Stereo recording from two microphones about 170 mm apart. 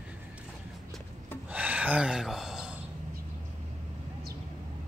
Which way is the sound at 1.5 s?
10° right (ahead or behind).